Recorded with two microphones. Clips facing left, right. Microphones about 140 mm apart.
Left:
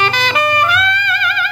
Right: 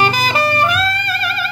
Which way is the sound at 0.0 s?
40° right (ahead or behind).